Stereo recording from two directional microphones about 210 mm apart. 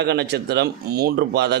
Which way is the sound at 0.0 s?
50° right (ahead or behind).